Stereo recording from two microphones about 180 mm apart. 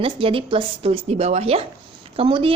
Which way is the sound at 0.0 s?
30° right (ahead or behind).